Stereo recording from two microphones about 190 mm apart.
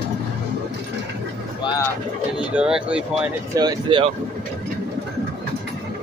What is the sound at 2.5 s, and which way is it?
Speech, 5° right (ahead or behind).